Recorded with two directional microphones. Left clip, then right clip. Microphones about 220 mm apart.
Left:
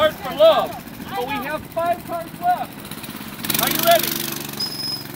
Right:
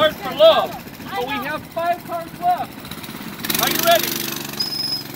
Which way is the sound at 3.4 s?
25° left (ahead or behind).